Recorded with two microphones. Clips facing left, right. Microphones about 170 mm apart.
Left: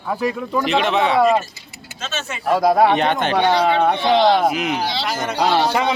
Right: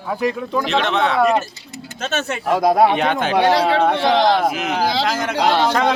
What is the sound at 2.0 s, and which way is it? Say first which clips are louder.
Speech: right 5 dB; 60° right (ahead or behind).